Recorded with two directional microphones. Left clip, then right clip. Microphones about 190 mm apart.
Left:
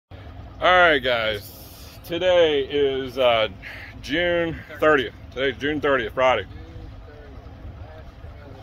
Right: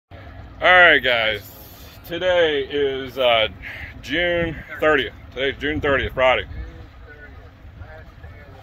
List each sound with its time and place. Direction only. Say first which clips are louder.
0.6 s speech: right 4 dB; 5° left (ahead or behind)